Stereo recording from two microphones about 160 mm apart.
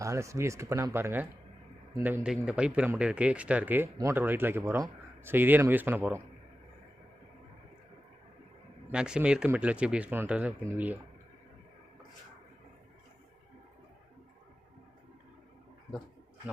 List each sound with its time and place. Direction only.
0.0 s speech: 20° right (ahead or behind)
8.9 s speech: 5° right (ahead or behind)